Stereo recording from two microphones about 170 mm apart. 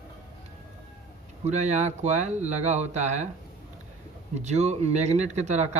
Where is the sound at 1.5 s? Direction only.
45° right (ahead or behind).